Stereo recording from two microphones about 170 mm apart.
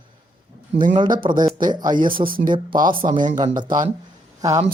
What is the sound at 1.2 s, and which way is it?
Speech, 30° right (ahead or behind).